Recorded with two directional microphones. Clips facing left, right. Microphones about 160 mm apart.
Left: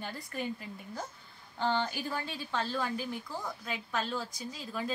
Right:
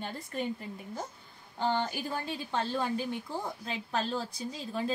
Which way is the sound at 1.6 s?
15° right (ahead or behind).